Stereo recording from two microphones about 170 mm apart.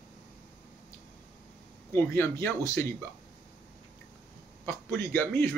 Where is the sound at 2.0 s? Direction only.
15° left (ahead or behind).